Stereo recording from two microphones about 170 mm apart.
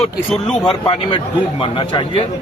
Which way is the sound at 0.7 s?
30° left (ahead or behind).